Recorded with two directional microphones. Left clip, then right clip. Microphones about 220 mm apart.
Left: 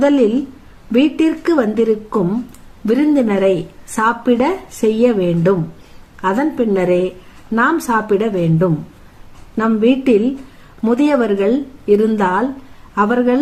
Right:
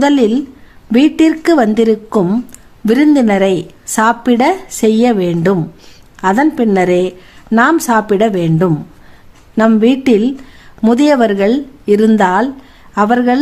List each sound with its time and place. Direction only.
0.0 s a woman's voice: 40° right (ahead or behind)